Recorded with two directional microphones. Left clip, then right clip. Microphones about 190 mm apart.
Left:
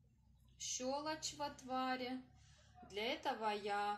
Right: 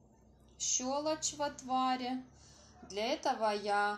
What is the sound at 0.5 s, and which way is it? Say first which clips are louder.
Speech: right 7 dB; 10° right (ahead or behind).